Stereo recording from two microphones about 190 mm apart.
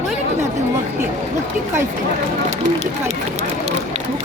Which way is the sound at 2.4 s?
35° right (ahead or behind).